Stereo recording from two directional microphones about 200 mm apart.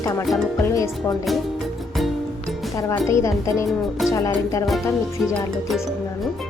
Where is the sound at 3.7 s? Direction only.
Centre (ahead or behind).